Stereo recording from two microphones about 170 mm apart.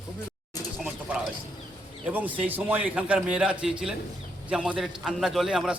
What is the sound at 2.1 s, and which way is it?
A man's voice, 10° right (ahead or behind).